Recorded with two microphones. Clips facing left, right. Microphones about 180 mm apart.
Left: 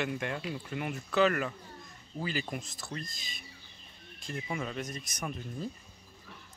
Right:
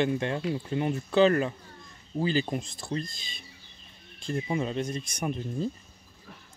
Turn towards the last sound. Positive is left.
turn(degrees=-25)  # may be behind; listen again after turning